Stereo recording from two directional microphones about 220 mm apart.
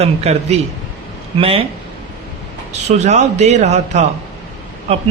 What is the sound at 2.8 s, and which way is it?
A man's voice, 30° right (ahead or behind).